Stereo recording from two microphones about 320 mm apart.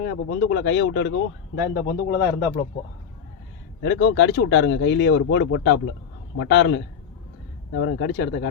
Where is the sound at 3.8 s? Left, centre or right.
Left.